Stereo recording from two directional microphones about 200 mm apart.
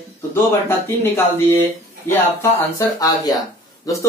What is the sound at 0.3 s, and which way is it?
Speech, 10° left (ahead or behind).